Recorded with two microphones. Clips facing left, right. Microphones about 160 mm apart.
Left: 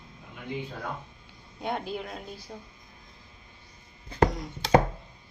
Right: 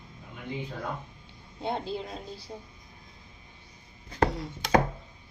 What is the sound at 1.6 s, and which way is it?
Speech, 30° right (ahead or behind).